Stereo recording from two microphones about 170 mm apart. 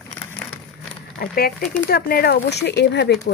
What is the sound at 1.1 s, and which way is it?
Speech, 60° left (ahead or behind).